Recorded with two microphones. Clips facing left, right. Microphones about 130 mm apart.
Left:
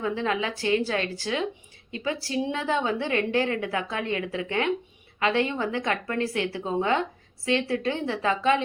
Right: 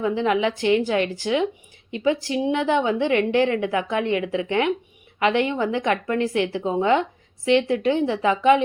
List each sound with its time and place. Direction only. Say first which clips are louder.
0.0 s a woman's voice: right 6 dB; 20° right (ahead or behind)